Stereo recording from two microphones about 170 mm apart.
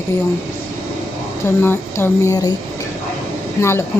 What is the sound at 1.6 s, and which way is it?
Speech, 15° left (ahead or behind).